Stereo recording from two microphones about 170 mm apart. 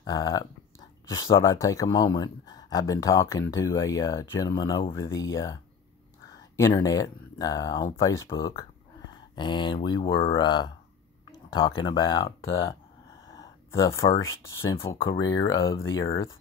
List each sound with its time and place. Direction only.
0.0 s speech: 25° left (ahead or behind)
6.3 s a sound: 15° left (ahead or behind)
6.7 s speech: 20° left (ahead or behind)
15.0 s speech: 25° left (ahead or behind)